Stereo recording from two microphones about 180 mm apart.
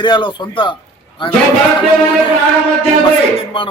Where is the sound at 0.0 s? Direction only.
25° left (ahead or behind).